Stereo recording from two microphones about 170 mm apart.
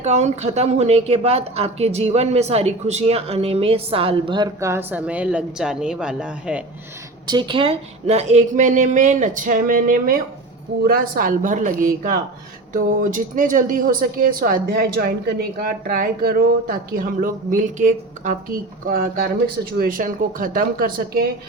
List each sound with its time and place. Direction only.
0.0 s speech: 40° right (ahead or behind)
4.6 s a woman's voice: 15° right (ahead or behind)
7.3 s a woman's voice: 25° right (ahead or behind); by 21.2 s 60° right (ahead or behind)